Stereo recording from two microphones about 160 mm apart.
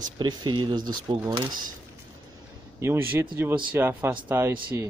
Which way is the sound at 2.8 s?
15° right (ahead or behind).